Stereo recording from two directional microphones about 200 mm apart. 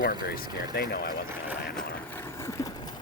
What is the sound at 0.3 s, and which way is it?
Speech, 55° left (ahead or behind).